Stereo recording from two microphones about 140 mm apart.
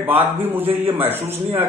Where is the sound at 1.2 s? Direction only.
45° right (ahead or behind).